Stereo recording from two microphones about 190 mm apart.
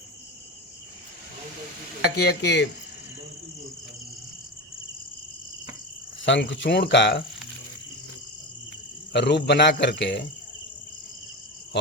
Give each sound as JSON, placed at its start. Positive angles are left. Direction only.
{"t": 2.0, "sound": "speech", "side_deg": 60}
{"t": 6.2, "sound": "speech", "side_deg": 70}
{"t": 9.1, "sound": "speech", "side_deg": 65}